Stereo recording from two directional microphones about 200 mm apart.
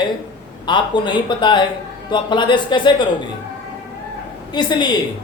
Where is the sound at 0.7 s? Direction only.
25° left (ahead or behind).